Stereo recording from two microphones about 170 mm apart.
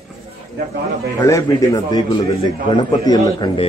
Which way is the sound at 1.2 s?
20° left (ahead or behind).